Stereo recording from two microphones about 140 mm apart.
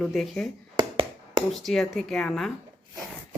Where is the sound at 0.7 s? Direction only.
35° right (ahead or behind).